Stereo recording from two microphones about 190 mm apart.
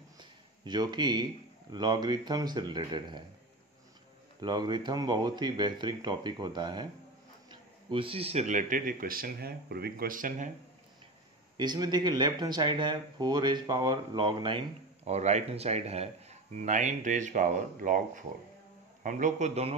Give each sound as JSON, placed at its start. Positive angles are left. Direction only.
{"t": 0.2, "sound": "a sound", "side_deg": -20}
{"t": 1.7, "sound": "speech", "side_deg": -20}
{"t": 4.4, "sound": "speech", "side_deg": -20}
{"t": 11.5, "sound": "speech", "side_deg": -20}
{"t": 15.0, "sound": "speech", "side_deg": -35}